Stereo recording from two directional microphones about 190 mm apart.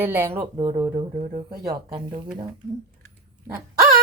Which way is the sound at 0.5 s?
30° right (ahead or behind).